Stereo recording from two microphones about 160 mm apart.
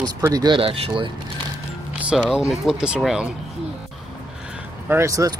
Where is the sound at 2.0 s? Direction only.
5° right (ahead or behind).